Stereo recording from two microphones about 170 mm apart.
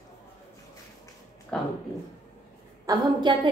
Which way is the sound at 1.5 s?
5° left (ahead or behind).